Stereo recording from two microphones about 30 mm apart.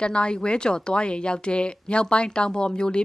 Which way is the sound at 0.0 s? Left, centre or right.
Left.